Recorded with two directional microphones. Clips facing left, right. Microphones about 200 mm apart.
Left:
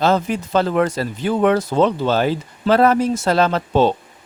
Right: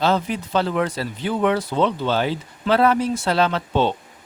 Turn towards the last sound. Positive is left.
turn(degrees=40)  # may be behind; listen again after turning